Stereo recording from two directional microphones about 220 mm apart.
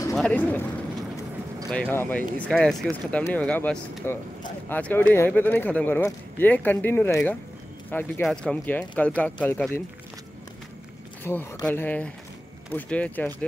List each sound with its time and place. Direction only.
0.1 s speech: 5° left (ahead or behind)
1.7 s speech: 5° left (ahead or behind)
11.2 s speech: 10° left (ahead or behind)